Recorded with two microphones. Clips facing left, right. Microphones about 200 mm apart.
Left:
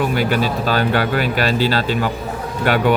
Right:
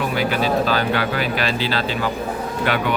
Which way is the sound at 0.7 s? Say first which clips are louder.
Left 3 dB; 45° left (ahead or behind).